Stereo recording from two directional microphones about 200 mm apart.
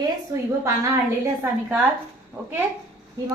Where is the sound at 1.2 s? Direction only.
15° right (ahead or behind).